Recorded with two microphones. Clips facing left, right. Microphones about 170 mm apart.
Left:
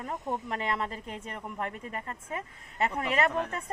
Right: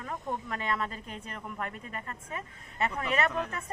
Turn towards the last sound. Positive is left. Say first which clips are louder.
# left 2 dB
turn(degrees=25)  # may be behind; listen again after turning